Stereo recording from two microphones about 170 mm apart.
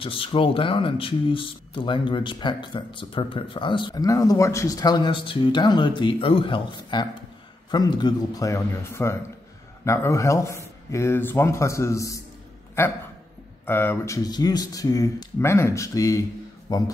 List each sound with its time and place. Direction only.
0.0 s speech: 30° left (ahead or behind)
13.7 s speech: 15° left (ahead or behind)